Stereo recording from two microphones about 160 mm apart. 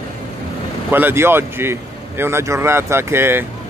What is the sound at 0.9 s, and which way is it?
Speech, 15° right (ahead or behind).